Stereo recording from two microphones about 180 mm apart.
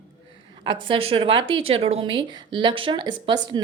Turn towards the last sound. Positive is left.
turn(degrees=-25)  # may be behind; listen again after turning